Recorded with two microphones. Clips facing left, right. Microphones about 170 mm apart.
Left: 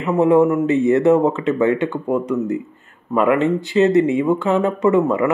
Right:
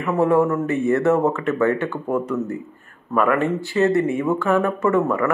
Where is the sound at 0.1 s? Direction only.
20° left (ahead or behind).